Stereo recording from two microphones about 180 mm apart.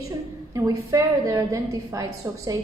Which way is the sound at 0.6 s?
20° right (ahead or behind).